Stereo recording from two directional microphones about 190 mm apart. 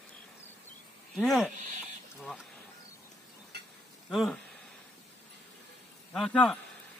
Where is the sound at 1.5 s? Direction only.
45° right (ahead or behind).